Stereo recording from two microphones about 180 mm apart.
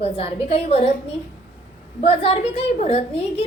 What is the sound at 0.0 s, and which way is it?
A woman's voice, 35° left (ahead or behind).